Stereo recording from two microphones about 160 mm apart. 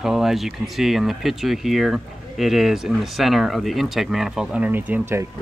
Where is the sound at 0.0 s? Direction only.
Centre (ahead or behind).